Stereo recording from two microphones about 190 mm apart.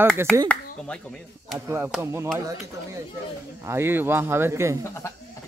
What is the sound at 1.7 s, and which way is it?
Speech, 10° right (ahead or behind).